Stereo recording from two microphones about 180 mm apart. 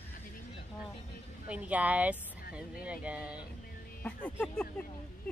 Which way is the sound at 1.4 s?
10° right (ahead or behind).